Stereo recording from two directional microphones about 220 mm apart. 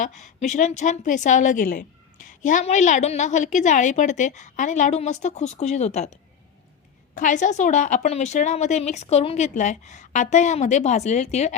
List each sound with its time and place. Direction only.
0.2 s a woman's voice: 35° left (ahead or behind)
7.2 s a woman's voice: 35° left (ahead or behind)